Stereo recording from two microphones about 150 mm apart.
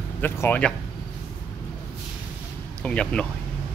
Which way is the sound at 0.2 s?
15° left (ahead or behind).